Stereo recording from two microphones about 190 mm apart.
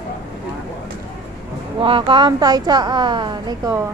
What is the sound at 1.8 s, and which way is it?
A woman's voice, 25° right (ahead or behind).